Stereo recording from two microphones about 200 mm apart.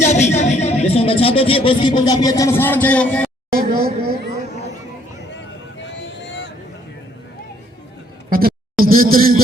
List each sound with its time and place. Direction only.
0.0 s speech: 35° left (ahead or behind); by 3.2 s 5° left (ahead or behind)
3.5 s speech: 50° right (ahead or behind)
8.3 s a sound: 45° right (ahead or behind)